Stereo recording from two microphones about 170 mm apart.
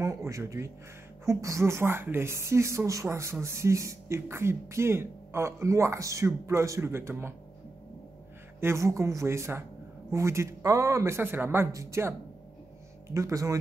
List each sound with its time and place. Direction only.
0.0 s speech: 15° right (ahead or behind)
8.5 s speech: 15° right (ahead or behind)